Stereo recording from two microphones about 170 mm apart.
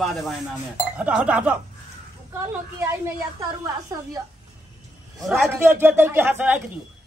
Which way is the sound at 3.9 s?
20° right (ahead or behind).